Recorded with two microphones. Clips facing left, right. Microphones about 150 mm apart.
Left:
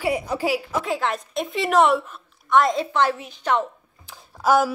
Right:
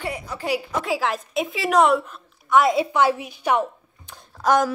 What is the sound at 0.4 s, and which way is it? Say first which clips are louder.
A woman's voice: left 1 dB; 5° left (ahead or behind).